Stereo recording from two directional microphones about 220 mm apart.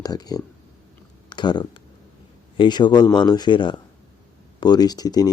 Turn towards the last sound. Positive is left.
turn(degrees=15)  # may be behind; listen again after turning